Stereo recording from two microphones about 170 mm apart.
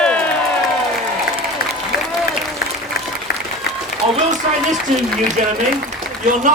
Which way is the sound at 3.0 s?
60° left (ahead or behind).